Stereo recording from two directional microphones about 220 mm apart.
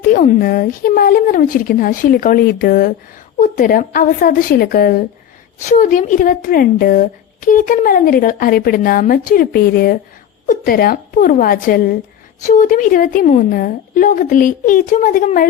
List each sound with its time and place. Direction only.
0.1 s speech: 40° left (ahead or behind)